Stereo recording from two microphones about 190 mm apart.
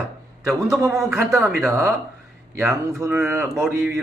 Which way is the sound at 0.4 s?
15° right (ahead or behind).